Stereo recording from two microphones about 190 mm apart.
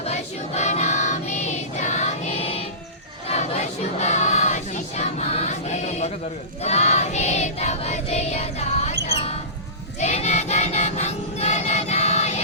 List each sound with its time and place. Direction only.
0.0 s child singing: 35° left (ahead or behind)
3.2 s choir: 35° left (ahead or behind)
6.6 s a sound: 35° left (ahead or behind)
10.0 s choir: 35° left (ahead or behind)